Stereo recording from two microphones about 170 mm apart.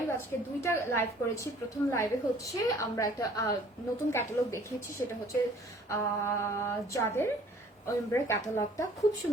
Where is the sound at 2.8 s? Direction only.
20° left (ahead or behind).